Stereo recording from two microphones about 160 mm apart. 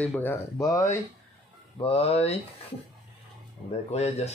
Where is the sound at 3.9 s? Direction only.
45° left (ahead or behind).